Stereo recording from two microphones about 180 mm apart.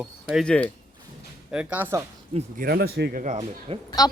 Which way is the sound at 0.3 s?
5° left (ahead or behind).